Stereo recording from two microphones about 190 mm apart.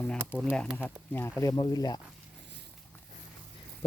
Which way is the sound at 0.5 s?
5° left (ahead or behind).